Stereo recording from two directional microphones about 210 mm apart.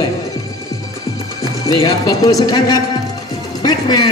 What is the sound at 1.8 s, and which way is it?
A man's voice, 15° left (ahead or behind).